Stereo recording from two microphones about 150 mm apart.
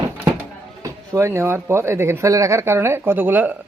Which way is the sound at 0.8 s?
20° right (ahead or behind).